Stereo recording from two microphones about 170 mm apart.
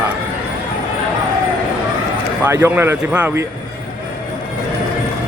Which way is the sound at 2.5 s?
15° right (ahead or behind).